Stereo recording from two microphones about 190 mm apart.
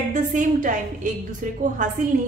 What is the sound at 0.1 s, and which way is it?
A woman's voice, 40° right (ahead or behind).